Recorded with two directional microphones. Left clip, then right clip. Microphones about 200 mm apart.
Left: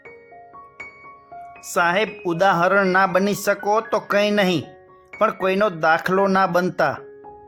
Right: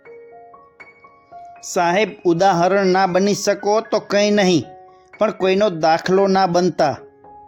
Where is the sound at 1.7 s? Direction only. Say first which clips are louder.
Right 2 dB; 20° right (ahead or behind).